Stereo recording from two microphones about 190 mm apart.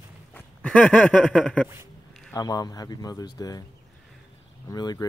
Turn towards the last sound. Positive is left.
turn(degrees=20)  # may be behind; listen again after turning